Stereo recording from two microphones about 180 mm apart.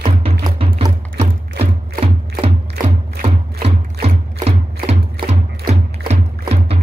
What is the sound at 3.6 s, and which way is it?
Music, 35° right (ahead or behind).